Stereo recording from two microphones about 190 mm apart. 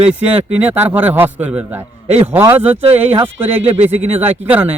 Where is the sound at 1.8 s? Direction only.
35° right (ahead or behind).